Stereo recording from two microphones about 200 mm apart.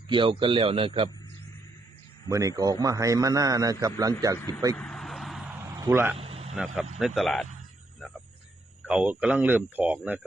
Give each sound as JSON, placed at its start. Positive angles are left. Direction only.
{"t": 0.1, "sound": "speech", "side_deg": -25}
{"t": 2.2, "sound": "a man's voice", "side_deg": -15}
{"t": 4.4, "sound": "speech", "side_deg": 15}
{"t": 4.8, "sound": "vehicle", "side_deg": 0}
{"t": 5.6, "sound": "a sound", "side_deg": -15}
{"t": 6.1, "sound": "vehicle", "side_deg": -30}
{"t": 7.0, "sound": "speech", "side_deg": 0}
{"t": 8.9, "sound": "a man's voice", "side_deg": -5}